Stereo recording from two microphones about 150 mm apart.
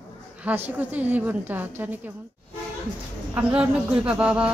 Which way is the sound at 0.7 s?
10° right (ahead or behind).